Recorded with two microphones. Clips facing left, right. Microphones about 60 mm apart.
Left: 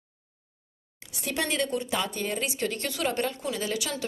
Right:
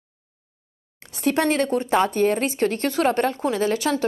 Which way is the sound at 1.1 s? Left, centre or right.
Right.